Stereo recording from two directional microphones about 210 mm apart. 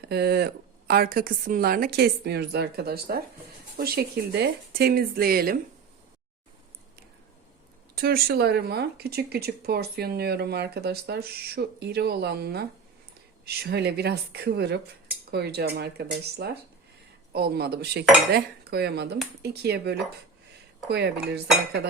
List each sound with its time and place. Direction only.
0.1 s speech: 50° right (ahead or behind)
7.9 s speech: 45° right (ahead or behind)